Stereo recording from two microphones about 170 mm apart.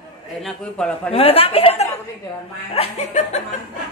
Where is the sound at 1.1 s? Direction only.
35° left (ahead or behind).